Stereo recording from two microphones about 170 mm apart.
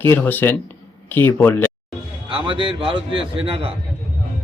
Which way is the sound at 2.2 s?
30° right (ahead or behind).